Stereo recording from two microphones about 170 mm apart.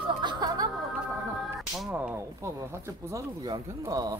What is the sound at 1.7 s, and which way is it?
Speech, 5° right (ahead or behind).